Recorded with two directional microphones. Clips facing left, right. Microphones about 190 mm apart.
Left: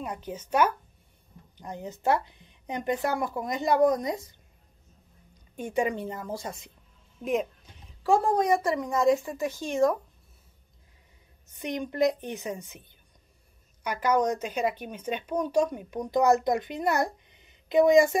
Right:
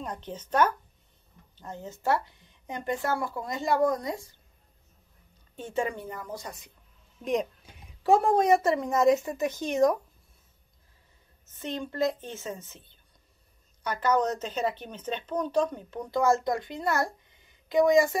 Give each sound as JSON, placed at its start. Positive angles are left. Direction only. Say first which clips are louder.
{"t": 0.0, "sound": "speech", "louder": "left 2 dB", "side_deg": 10}
{"t": 5.6, "sound": "speech", "louder": "left 3 dB", "side_deg": 15}
{"t": 8.0, "sound": "speech", "louder": "right 1 dB", "side_deg": -25}
{"t": 11.4, "sound": "speech", "louder": "left 2 dB", "side_deg": 15}